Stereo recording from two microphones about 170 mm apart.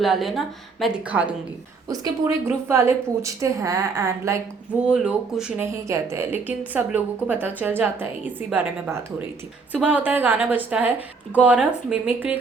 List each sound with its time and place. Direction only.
0.0 s a woman's voice: centre (ahead or behind)